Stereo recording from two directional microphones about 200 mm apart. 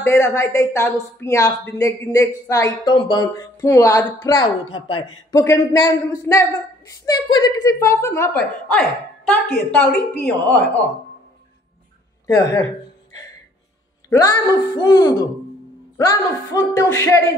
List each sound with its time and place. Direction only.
0.0 s a woman's voice: 15° left (ahead or behind)
5.4 s a woman's voice: 15° left (ahead or behind)
14.0 s a woman's voice: 15° left (ahead or behind)